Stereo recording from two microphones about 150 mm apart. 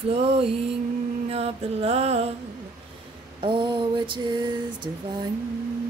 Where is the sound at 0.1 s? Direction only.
40° right (ahead or behind).